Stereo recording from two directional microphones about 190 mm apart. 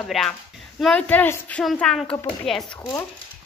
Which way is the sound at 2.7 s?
15° left (ahead or behind).